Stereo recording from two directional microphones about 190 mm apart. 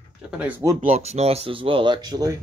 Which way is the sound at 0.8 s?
35° right (ahead or behind).